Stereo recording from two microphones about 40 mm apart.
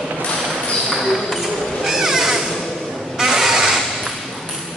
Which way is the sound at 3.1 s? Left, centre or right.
Centre.